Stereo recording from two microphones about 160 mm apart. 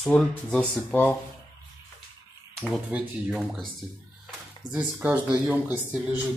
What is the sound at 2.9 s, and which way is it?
Speech, 5° right (ahead or behind).